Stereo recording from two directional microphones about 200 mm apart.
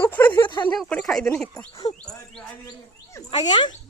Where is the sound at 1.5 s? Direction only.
20° left (ahead or behind).